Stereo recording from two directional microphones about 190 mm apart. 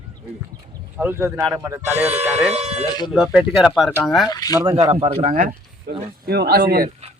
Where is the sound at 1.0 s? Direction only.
10° right (ahead or behind).